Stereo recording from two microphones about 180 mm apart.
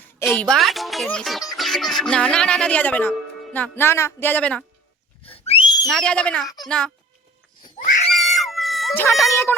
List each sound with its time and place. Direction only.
0.3 s speech: centre (ahead or behind)
1.0 s music: centre (ahead or behind)
1.5 s speech: centre (ahead or behind)
5.2 s whistle: 30° left (ahead or behind)
5.9 s speech: 5° left (ahead or behind)
6.7 s music: 5° left (ahead or behind)
8.1 s dog: centre (ahead or behind)
9.3 s speech: 15° left (ahead or behind)